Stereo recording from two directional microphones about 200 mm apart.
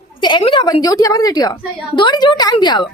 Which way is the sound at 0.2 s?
25° left (ahead or behind).